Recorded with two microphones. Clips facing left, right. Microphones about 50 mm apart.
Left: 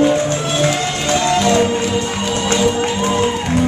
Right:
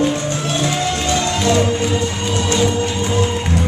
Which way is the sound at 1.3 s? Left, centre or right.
Left.